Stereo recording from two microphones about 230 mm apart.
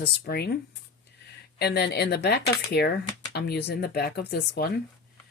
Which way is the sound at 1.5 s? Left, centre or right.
Left.